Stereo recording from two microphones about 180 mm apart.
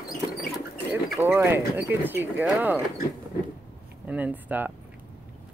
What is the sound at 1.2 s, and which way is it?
Speech, 15° right (ahead or behind).